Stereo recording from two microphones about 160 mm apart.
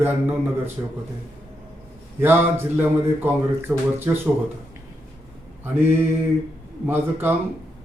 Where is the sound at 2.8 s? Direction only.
15° right (ahead or behind).